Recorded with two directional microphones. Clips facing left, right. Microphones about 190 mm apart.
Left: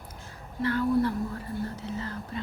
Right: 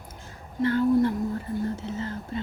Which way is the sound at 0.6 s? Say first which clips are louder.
Right 4 dB; 25° right (ahead or behind).